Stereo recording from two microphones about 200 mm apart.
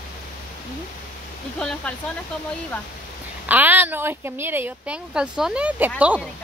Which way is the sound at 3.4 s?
10° right (ahead or behind).